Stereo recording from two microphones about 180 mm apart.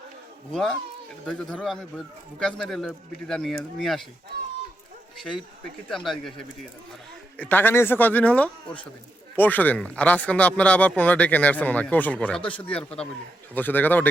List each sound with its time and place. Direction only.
1.3 s speech: centre (ahead or behind)
5.9 s speech: centre (ahead or behind)
12.5 s speech: 30° left (ahead or behind)
12.7 s speech: 5° left (ahead or behind)